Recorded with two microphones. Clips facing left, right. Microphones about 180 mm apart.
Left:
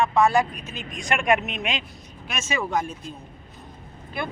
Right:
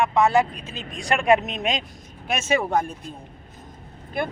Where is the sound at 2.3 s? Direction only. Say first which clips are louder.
Right 5 dB; 60° right (ahead or behind).